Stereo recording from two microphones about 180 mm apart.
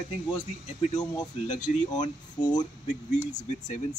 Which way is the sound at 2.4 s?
25° left (ahead or behind).